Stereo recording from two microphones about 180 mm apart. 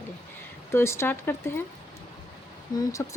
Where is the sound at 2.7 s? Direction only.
15° left (ahead or behind).